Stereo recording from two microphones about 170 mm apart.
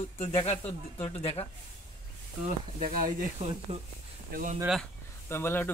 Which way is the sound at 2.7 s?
55° right (ahead or behind).